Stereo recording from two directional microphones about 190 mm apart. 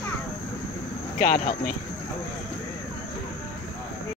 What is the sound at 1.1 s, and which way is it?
Speech, 50° left (ahead or behind).